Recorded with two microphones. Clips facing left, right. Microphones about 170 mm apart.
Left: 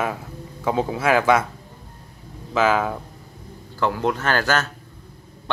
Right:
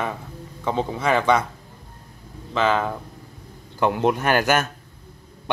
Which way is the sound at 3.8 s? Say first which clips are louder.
Right 2 dB; 20° right (ahead or behind).